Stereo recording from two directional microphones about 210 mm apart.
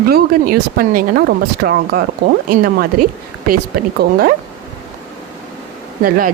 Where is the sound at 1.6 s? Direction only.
55° right (ahead or behind).